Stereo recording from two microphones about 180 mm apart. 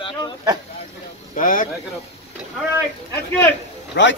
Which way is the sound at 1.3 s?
45° left (ahead or behind).